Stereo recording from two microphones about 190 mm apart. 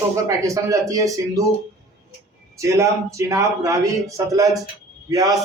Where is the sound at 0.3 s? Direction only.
15° right (ahead or behind).